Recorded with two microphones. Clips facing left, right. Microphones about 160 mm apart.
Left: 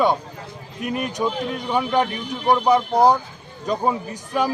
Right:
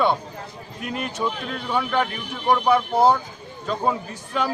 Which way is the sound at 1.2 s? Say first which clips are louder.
Left 3 dB; 15° left (ahead or behind).